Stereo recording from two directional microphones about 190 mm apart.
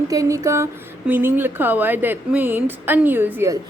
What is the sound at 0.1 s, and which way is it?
Speech, 15° right (ahead or behind).